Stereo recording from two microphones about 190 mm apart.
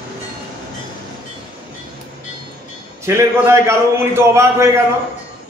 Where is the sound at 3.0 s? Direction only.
15° right (ahead or behind).